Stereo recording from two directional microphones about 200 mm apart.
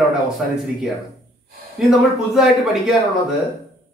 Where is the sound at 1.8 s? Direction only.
Centre (ahead or behind).